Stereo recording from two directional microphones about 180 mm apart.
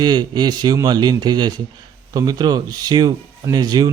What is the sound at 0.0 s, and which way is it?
Speech, 25° right (ahead or behind).